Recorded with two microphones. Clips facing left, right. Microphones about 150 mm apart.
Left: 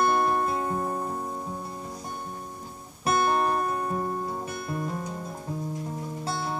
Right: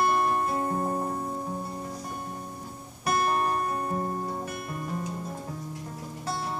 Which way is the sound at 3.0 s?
30° left (ahead or behind).